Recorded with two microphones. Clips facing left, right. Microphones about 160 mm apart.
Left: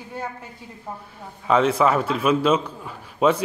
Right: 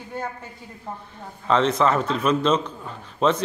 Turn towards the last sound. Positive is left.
turn(degrees=10)  # may be behind; listen again after turning